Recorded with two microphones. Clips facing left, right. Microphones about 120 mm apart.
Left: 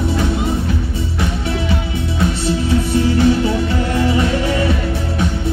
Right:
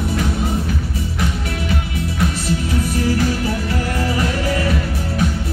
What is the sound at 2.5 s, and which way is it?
Music, 25° left (ahead or behind).